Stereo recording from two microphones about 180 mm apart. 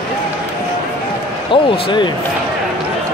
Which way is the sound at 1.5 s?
25° left (ahead or behind).